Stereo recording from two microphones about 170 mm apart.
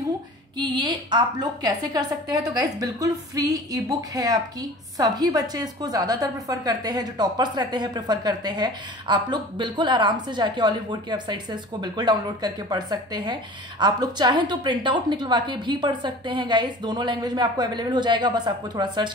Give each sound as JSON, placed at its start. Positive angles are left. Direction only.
{"t": 0.6, "sound": "a woman's voice", "side_deg": -25}